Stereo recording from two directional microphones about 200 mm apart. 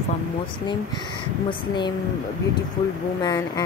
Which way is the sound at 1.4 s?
20° left (ahead or behind).